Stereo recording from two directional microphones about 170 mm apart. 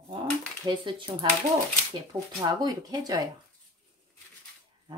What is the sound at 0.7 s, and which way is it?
Speech, 30° right (ahead or behind).